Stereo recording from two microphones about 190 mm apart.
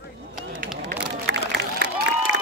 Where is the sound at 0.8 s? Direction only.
60° right (ahead or behind).